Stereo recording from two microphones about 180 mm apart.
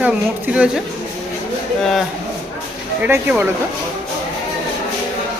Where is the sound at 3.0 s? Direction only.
10° right (ahead or behind).